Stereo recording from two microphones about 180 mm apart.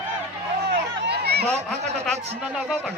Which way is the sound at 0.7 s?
65° right (ahead or behind).